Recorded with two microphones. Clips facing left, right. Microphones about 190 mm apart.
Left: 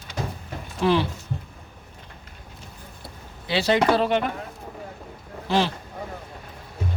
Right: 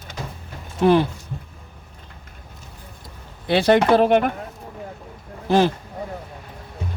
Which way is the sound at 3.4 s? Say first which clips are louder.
Right 5 dB; 55° right (ahead or behind).